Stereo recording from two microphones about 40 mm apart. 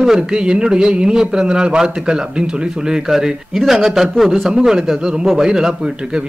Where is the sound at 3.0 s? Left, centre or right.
Centre.